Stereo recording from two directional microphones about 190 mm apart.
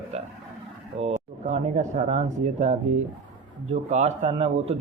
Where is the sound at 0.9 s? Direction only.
35° right (ahead or behind).